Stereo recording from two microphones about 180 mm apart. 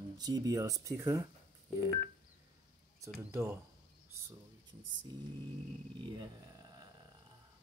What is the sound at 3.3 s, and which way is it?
Speech, 15° right (ahead or behind).